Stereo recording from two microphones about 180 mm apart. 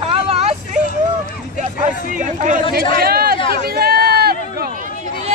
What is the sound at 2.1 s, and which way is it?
Speech, 45° right (ahead or behind).